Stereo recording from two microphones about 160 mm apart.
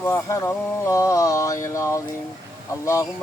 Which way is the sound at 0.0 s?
15° left (ahead or behind).